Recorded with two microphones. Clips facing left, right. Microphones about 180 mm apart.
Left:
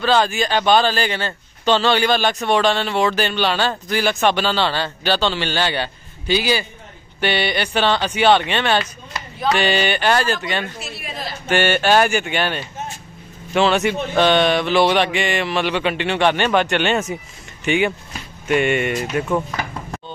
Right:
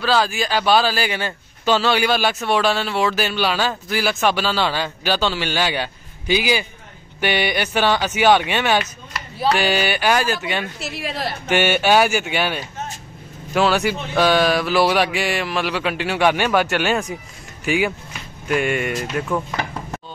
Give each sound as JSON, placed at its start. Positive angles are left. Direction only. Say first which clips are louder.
{"t": 0.0, "sound": "a man's voice", "louder": "left 2 dB", "side_deg": 0}
{"t": 10.8, "sound": "a woman's voice", "louder": "right 4 dB", "side_deg": -85}
{"t": 11.4, "sound": "a man's voice", "louder": "left 1 dB", "side_deg": -10}